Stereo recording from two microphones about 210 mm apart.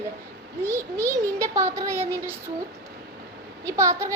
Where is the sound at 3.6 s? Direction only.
15° right (ahead or behind).